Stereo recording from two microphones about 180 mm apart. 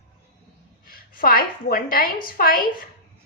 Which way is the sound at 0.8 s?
55° left (ahead or behind).